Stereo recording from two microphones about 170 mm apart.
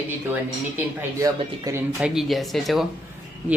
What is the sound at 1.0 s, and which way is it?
Speech, 15° right (ahead or behind).